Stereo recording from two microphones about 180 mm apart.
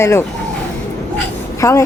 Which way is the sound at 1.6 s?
15° left (ahead or behind).